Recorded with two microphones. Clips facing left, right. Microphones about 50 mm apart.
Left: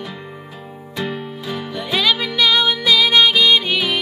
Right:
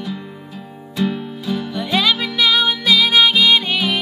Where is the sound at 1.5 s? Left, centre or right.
Centre.